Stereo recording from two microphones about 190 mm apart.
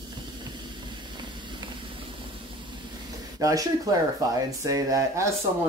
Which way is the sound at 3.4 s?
20° right (ahead or behind).